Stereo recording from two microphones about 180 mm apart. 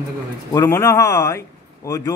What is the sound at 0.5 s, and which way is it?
Speech, 15° left (ahead or behind).